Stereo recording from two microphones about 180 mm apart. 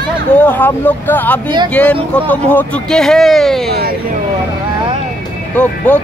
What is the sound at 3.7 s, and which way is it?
Speech, 60° right (ahead or behind).